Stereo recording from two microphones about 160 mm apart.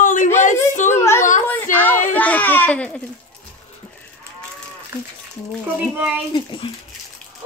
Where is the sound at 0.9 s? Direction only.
15° left (ahead or behind).